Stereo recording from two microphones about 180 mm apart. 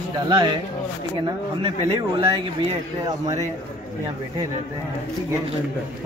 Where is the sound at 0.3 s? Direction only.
25° right (ahead or behind).